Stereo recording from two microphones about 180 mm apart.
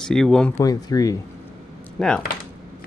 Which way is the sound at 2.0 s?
Centre (ahead or behind).